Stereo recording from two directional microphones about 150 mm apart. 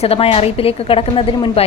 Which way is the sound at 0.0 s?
40° left (ahead or behind).